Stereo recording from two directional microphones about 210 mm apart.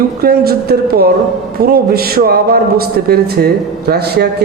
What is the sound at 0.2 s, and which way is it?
A man's voice, 45° right (ahead or behind).